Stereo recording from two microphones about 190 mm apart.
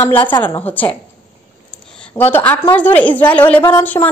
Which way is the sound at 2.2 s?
10° left (ahead or behind).